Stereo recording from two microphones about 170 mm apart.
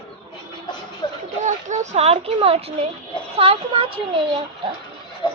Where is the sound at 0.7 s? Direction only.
25° left (ahead or behind).